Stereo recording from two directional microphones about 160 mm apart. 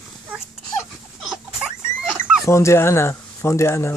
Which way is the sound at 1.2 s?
Centre (ahead or behind).